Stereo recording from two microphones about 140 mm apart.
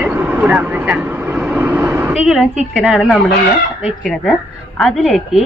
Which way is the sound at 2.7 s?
5° right (ahead or behind).